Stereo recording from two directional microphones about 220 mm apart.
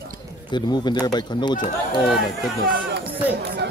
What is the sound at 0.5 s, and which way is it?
Speech, 20° left (ahead or behind).